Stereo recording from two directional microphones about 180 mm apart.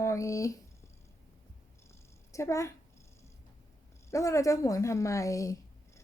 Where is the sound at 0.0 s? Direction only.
15° left (ahead or behind).